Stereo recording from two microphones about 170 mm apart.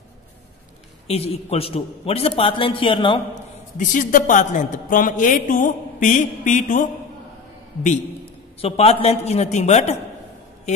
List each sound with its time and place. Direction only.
1.0 s a man's voice: 35° left (ahead or behind)
3.7 s a woman's voice: 50° left (ahead or behind)
8.5 s a man's voice: 35° left (ahead or behind)